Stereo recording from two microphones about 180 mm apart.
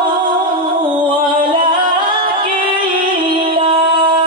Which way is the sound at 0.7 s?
25° right (ahead or behind).